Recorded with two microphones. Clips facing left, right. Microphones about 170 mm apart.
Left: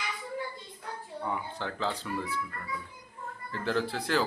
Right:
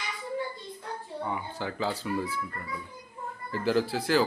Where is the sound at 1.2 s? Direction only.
5° right (ahead or behind).